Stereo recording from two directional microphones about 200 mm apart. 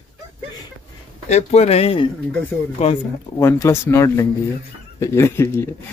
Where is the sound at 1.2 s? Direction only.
35° left (ahead or behind).